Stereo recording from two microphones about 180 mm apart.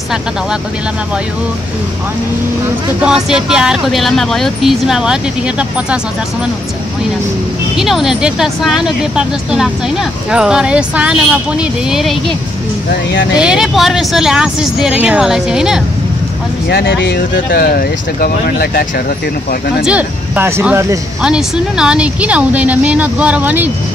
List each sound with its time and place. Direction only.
3.0 s speech: 5° right (ahead or behind)
7.7 s speech: centre (ahead or behind)
13.4 s speech: 5° right (ahead or behind)
16.6 s speech: 70° left (ahead or behind)
17.5 s speech: 55° left (ahead or behind)
19.8 s speech: 5° right (ahead or behind)